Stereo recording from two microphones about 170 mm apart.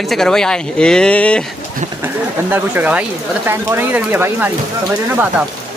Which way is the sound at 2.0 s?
10° right (ahead or behind).